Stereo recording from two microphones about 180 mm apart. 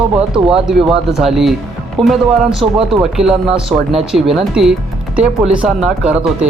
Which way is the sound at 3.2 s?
5° right (ahead or behind).